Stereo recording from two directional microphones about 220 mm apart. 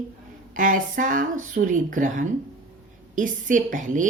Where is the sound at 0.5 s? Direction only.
35° right (ahead or behind).